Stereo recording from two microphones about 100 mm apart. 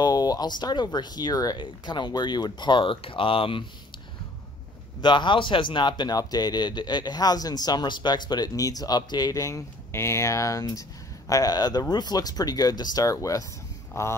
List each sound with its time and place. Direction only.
0.0 s speech: 40° left (ahead or behind); by 3.6 s 60° left (ahead or behind)
5.0 s speech: 50° left (ahead or behind); by 14.1 s 30° left (ahead or behind)